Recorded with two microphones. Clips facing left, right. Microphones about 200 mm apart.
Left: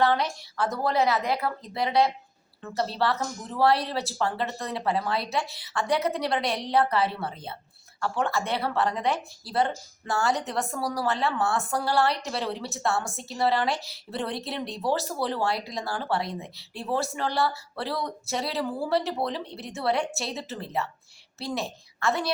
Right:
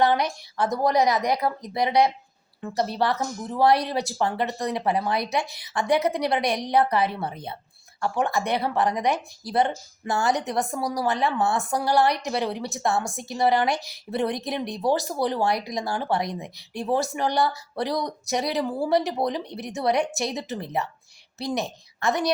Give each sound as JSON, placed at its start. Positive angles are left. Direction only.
{"t": 0.0, "sound": "a woman's voice", "side_deg": -15}